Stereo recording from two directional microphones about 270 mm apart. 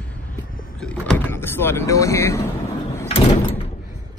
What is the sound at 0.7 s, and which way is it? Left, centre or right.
Speech, centre.